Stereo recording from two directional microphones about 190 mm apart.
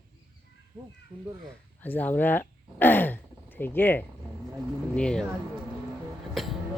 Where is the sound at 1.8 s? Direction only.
10° left (ahead or behind).